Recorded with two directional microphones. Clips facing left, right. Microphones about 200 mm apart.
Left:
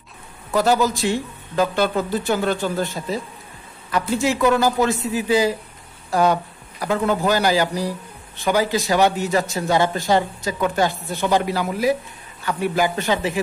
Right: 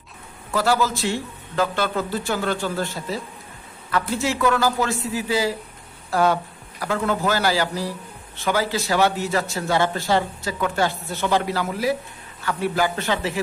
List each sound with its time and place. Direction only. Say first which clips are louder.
0.5 s speech: left 3 dB; 20° left (ahead or behind)
4.2 s a man's voice: left 4 dB; 15° left (ahead or behind)